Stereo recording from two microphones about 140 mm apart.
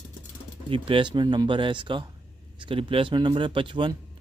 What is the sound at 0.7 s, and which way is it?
Speech, 40° right (ahead or behind).